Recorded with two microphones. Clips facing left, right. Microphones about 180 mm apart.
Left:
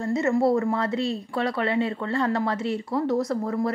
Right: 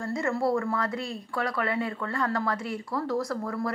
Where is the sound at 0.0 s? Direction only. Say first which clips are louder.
Left 5 dB; 20° left (ahead or behind).